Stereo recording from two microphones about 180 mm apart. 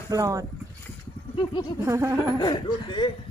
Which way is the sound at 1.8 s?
15° right (ahead or behind).